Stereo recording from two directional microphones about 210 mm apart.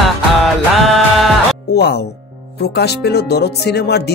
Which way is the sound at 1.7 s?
50° left (ahead or behind).